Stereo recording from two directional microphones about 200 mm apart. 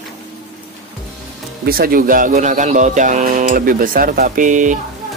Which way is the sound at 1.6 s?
45° right (ahead or behind).